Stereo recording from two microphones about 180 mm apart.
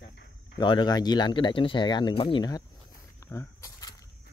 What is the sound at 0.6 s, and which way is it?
Speech, 25° left (ahead or behind).